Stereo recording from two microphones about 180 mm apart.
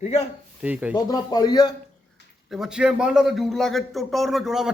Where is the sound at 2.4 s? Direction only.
5° right (ahead or behind).